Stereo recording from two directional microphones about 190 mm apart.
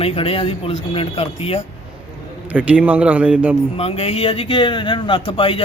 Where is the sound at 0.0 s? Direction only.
30° left (ahead or behind).